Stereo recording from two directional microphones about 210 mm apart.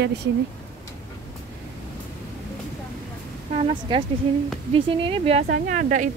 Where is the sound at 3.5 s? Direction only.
25° right (ahead or behind).